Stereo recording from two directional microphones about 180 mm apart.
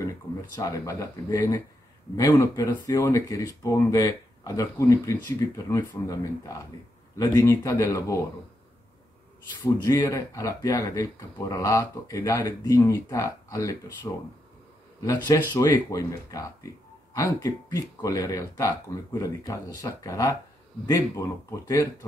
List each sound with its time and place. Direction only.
0.6 s speech: 20° left (ahead or behind)
9.8 s speech: 15° left (ahead or behind)